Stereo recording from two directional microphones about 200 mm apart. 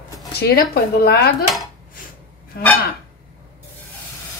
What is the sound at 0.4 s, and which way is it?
Speech, 50° left (ahead or behind).